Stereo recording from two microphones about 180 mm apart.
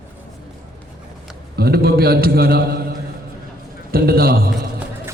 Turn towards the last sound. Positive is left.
turn(degrees=-60)  # may be behind; listen again after turning